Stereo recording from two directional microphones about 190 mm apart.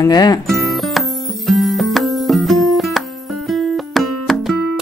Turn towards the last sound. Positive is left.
turn(degrees=0)  # may be behind; listen again after turning